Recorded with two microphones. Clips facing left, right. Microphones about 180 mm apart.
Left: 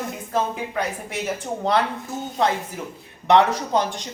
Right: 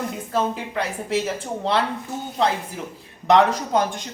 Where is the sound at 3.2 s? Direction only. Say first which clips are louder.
Even; 45° right (ahead or behind).